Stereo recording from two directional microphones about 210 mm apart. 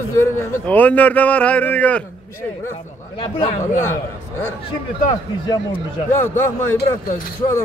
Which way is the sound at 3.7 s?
10° left (ahead or behind).